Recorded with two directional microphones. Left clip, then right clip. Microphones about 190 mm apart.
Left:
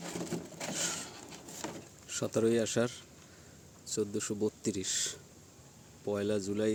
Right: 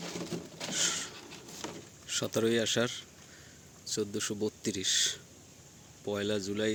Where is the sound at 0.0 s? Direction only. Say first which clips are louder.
Even; 40° left (ahead or behind).